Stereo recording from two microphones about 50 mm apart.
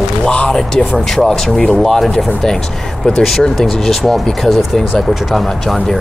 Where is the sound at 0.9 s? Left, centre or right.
Centre.